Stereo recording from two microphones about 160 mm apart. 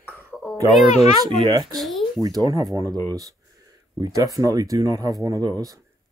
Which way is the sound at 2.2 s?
20° right (ahead or behind).